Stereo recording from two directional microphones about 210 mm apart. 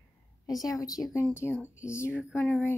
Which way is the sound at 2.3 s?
5° left (ahead or behind).